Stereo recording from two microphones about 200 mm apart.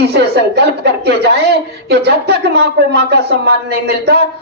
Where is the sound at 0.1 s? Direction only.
55° right (ahead or behind).